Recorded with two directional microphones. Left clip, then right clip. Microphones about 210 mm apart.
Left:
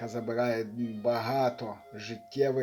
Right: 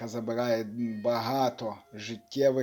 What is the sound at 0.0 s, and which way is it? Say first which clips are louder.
Speech: left 1 dB; 30° right (ahead or behind).